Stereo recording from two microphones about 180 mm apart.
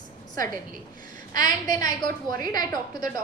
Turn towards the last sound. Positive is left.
turn(degrees=20)  # may be behind; listen again after turning